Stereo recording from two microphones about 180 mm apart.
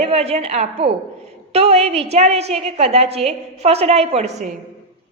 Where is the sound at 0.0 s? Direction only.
35° right (ahead or behind).